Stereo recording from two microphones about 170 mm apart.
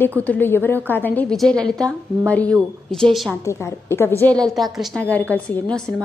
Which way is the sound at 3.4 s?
15° left (ahead or behind).